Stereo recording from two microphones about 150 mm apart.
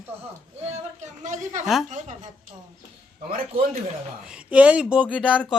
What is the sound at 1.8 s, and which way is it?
Speech, 55° right (ahead or behind).